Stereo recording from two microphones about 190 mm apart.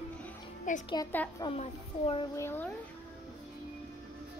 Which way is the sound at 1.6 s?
30° left (ahead or behind).